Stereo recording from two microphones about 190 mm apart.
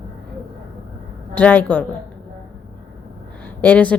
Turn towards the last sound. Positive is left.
turn(degrees=10)  # may be behind; listen again after turning